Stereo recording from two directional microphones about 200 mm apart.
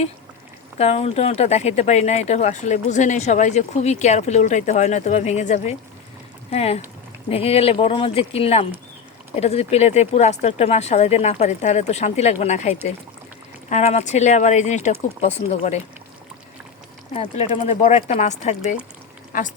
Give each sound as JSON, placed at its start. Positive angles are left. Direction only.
{"t": 0.8, "sound": "speech", "side_deg": 30}
{"t": 17.2, "sound": "speech", "side_deg": 30}